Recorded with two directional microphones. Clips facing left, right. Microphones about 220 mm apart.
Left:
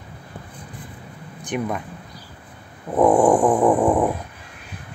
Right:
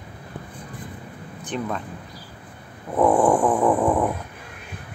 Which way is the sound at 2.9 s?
15° left (ahead or behind).